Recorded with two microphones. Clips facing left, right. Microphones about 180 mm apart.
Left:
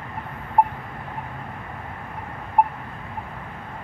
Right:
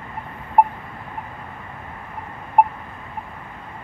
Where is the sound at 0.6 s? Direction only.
65° right (ahead or behind).